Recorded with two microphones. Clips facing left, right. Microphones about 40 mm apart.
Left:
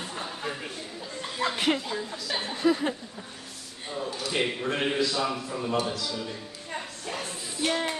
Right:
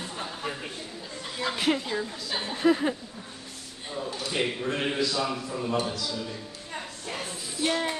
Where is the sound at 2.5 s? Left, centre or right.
Centre.